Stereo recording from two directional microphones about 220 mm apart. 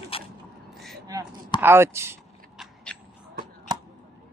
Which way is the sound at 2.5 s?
5° left (ahead or behind).